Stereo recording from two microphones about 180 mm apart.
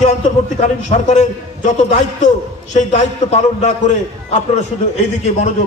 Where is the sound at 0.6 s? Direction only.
40° left (ahead or behind).